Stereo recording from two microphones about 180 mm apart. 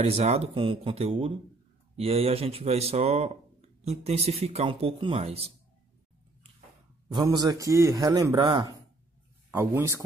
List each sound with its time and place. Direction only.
0.0 s a man's voice: 35° right (ahead or behind)
7.1 s a man's voice: 25° right (ahead or behind)
9.5 s speech: 15° right (ahead or behind)